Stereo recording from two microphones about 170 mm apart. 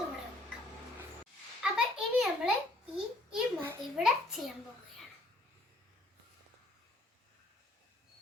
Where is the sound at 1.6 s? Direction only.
5° right (ahead or behind).